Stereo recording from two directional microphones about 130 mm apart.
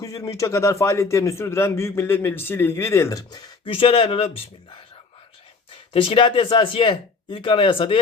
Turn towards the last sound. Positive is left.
turn(degrees=40)  # may be behind; listen again after turning